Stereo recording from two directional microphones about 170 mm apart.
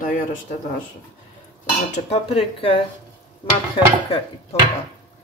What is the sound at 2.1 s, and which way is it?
Speech, 35° left (ahead or behind).